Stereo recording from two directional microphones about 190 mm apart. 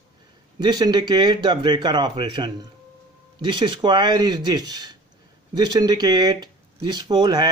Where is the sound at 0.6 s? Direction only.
20° right (ahead or behind).